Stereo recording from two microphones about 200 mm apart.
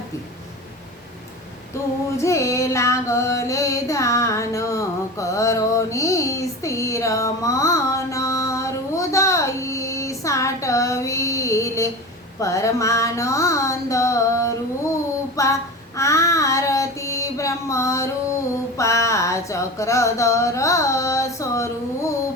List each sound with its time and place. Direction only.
2.1 s carnatic music: 15° left (ahead or behind)
12.4 s music: 15° left (ahead or behind)
15.4 s child singing: 15° left (ahead or behind)
18.8 s a sound: 15° left (ahead or behind)